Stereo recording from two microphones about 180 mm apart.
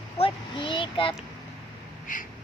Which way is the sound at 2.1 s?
45° left (ahead or behind).